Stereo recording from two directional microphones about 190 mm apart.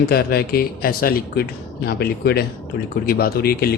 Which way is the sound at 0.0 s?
55° left (ahead or behind).